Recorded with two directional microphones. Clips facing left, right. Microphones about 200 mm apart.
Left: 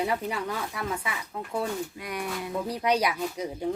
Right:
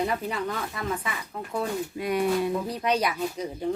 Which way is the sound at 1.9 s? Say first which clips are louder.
Right 9 dB; 25° right (ahead or behind).